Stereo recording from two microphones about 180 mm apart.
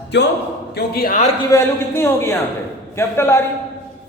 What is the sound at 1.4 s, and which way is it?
Speech, 15° left (ahead or behind).